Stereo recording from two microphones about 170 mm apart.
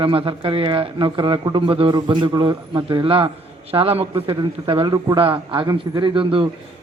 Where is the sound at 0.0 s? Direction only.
30° right (ahead or behind).